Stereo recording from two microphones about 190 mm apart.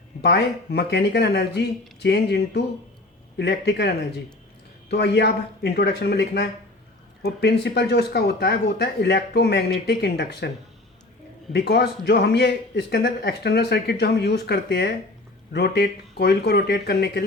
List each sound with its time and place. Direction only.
0.2 s a man's voice: 60° left (ahead or behind)
11.5 s a man's voice: 60° left (ahead or behind)